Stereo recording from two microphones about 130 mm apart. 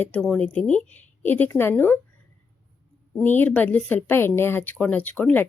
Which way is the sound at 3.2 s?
15° left (ahead or behind).